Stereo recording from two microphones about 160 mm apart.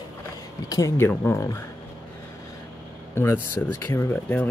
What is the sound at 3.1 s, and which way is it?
Speech, 15° left (ahead or behind).